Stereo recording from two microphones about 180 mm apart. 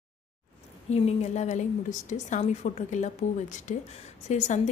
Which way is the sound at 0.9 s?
35° left (ahead or behind).